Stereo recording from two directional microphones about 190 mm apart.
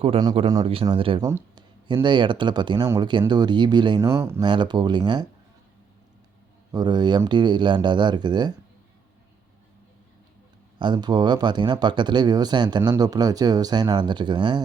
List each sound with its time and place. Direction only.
0.0 s speech: 25° right (ahead or behind)
1.2 s speech: 15° right (ahead or behind)
6.7 s speech: 20° right (ahead or behind)
10.8 s speech: 25° right (ahead or behind)